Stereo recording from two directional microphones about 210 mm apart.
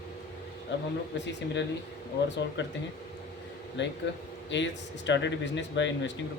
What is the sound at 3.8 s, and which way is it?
Speech, 60° left (ahead or behind).